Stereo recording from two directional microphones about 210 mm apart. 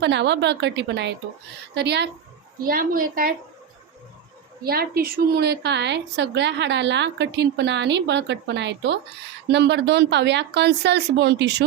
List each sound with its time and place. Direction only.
0.0 s a woman's voice: 55° right (ahead or behind)
2.6 s a woman's voice: 45° right (ahead or behind)
4.6 s a woman's voice: 45° right (ahead or behind)